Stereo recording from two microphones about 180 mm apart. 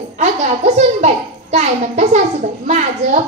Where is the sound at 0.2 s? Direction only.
40° right (ahead or behind).